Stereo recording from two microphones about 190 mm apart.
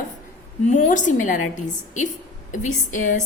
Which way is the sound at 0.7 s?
40° left (ahead or behind).